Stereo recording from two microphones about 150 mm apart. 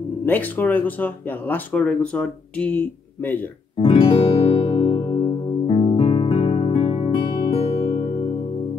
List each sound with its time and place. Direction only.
0.2 s speech: 10° left (ahead or behind)
3.7 s speech: 35° left (ahead or behind)
4.6 s music: 35° left (ahead or behind)